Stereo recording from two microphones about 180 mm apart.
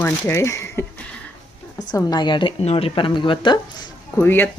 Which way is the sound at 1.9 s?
25° left (ahead or behind).